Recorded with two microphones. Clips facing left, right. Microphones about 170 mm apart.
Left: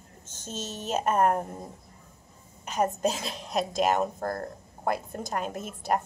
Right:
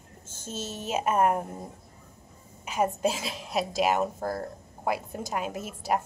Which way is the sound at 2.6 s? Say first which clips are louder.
Even; 5° right (ahead or behind).